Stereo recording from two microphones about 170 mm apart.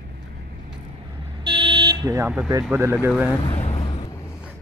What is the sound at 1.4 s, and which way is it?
Vehicle, 30° right (ahead or behind).